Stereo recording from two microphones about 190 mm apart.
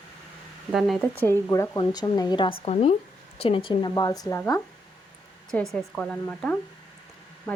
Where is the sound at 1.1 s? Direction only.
10° left (ahead or behind).